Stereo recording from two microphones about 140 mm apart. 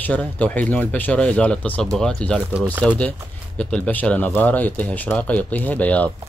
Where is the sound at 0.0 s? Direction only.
10° left (ahead or behind).